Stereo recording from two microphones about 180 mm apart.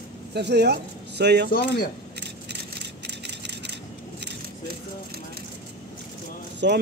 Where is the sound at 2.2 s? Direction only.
70° right (ahead or behind).